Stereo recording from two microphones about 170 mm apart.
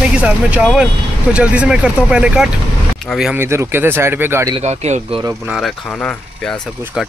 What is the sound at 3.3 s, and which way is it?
Speech, 15° right (ahead or behind).